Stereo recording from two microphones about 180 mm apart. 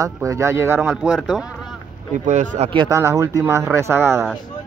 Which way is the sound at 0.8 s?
5° right (ahead or behind).